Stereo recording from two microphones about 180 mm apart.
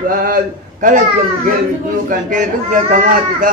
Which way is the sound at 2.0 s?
50° right (ahead or behind).